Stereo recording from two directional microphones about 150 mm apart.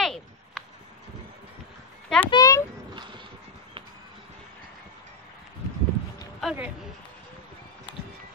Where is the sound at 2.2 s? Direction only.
25° left (ahead or behind).